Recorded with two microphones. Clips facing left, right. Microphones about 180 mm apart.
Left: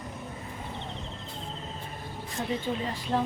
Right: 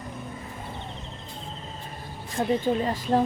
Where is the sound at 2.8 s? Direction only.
45° right (ahead or behind).